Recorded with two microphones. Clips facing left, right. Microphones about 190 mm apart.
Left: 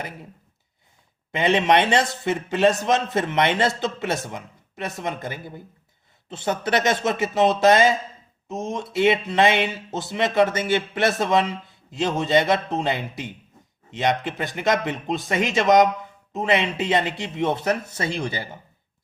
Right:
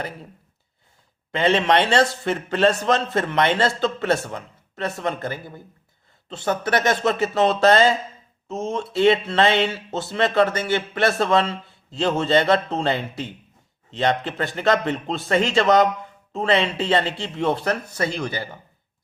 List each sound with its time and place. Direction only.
1.3 s a man's voice: 15° left (ahead or behind)